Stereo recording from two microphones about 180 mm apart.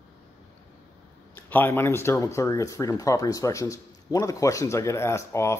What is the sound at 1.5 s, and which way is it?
Speech, 10° left (ahead or behind).